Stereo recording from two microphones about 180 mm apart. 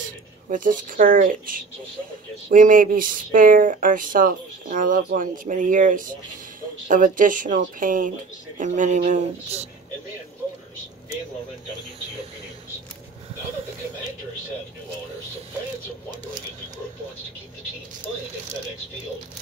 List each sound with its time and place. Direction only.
0.5 s speech: 50° right (ahead or behind)